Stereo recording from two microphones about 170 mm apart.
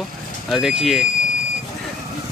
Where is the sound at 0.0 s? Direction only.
Centre (ahead or behind).